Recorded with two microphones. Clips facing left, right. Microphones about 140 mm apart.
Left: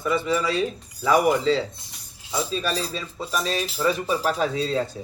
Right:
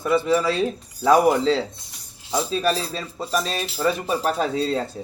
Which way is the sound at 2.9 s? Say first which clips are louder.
Right 3 dB; 50° right (ahead or behind).